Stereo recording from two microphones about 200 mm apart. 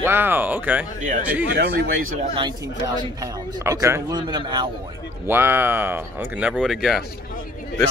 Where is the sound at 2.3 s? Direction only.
20° right (ahead or behind).